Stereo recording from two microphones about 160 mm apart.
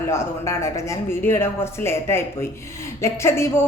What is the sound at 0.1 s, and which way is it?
Speech, 15° left (ahead or behind).